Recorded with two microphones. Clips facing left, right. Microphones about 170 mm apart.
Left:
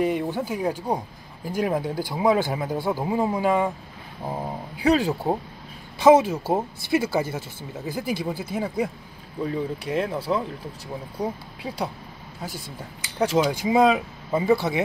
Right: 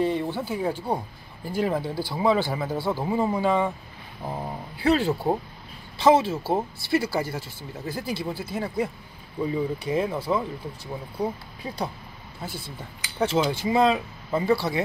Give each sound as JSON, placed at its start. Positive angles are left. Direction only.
{"t": 0.0, "sound": "speech", "side_deg": 15}
{"t": 9.4, "sound": "speech", "side_deg": -5}
{"t": 11.1, "sound": "speech", "side_deg": 10}